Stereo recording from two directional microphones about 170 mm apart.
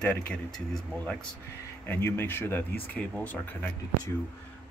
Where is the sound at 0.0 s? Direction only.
5° left (ahead or behind).